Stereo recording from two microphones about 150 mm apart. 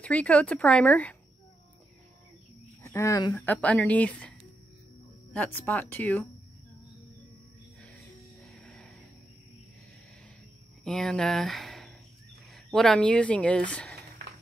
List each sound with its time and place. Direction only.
0.0 s speech: 10° left (ahead or behind)
2.8 s speech: 20° left (ahead or behind)
3.3 s speech: 10° left (ahead or behind)
8.6 s a sound: centre (ahead or behind)
10.8 s speech: 5° left (ahead or behind)